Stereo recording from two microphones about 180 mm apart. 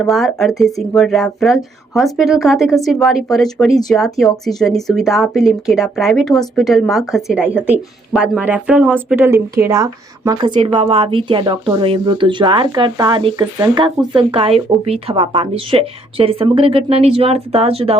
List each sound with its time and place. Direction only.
0.0 s speech: centre (ahead or behind); by 18.0 s 35° right (ahead or behind)